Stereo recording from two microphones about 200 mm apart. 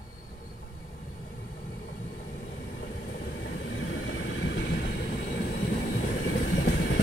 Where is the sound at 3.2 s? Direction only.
55° left (ahead or behind).